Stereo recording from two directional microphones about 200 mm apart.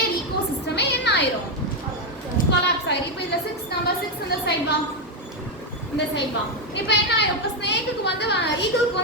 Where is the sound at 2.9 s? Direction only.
60° left (ahead or behind).